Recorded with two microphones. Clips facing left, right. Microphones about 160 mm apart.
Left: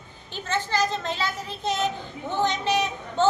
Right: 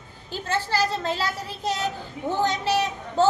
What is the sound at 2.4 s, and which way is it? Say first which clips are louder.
Speech: left 1 dB; 35° right (ahead or behind).